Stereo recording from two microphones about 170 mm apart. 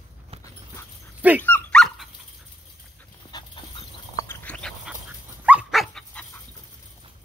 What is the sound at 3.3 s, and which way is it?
Dog, 25° left (ahead or behind).